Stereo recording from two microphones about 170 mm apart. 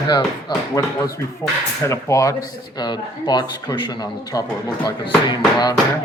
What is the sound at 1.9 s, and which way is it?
Speech, 20° left (ahead or behind).